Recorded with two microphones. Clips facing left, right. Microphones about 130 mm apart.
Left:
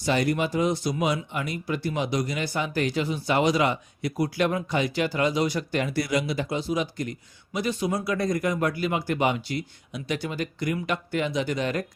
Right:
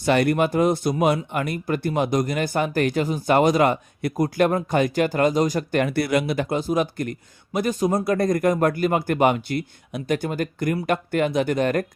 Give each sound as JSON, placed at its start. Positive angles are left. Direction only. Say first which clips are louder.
{"t": 0.0, "sound": "speech", "louder": "right 5 dB", "side_deg": -60}